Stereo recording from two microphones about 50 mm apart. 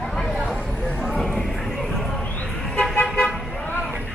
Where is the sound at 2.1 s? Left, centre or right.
Centre.